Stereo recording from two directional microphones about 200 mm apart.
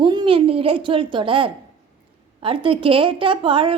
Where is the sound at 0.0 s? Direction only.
20° right (ahead or behind).